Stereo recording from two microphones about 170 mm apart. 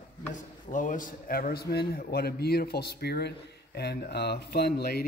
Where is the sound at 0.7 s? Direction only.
50° left (ahead or behind).